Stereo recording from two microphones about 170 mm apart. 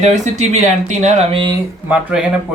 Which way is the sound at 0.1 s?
40° right (ahead or behind).